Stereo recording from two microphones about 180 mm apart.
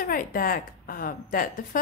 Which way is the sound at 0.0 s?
50° left (ahead or behind).